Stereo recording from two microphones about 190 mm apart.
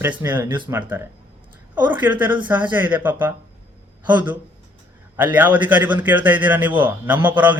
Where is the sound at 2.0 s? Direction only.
10° right (ahead or behind).